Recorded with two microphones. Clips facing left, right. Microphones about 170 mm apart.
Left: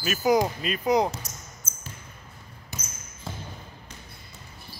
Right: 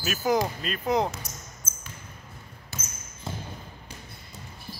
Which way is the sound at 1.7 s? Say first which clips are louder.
Even; 90° right.